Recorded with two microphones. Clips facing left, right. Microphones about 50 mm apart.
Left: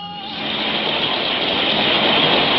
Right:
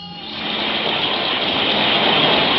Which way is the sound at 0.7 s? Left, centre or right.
Centre.